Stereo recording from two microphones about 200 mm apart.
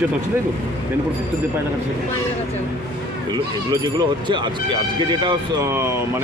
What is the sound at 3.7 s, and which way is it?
Speech, 20° right (ahead or behind).